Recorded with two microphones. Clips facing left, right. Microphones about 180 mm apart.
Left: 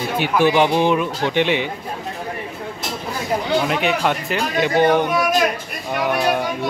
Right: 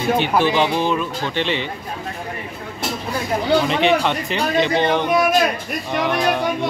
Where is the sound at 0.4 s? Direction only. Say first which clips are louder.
Left 2 dB; 15° left (ahead or behind).